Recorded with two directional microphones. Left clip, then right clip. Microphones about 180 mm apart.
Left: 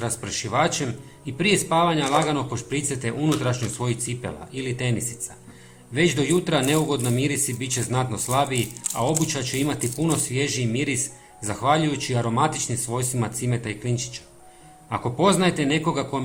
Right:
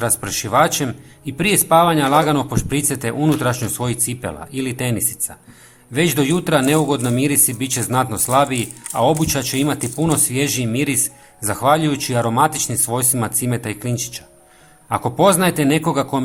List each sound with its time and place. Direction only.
0.0 s a man's voice: 35° right (ahead or behind)